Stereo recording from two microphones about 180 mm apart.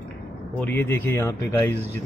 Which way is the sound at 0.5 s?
10° left (ahead or behind).